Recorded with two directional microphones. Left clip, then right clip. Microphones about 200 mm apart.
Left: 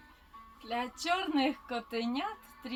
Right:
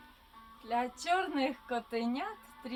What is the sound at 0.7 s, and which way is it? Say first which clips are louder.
A woman's voice: right 1 dB; 15° right (ahead or behind).